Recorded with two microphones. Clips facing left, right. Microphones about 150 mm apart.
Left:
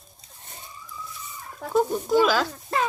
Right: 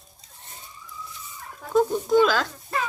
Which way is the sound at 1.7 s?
10° left (ahead or behind).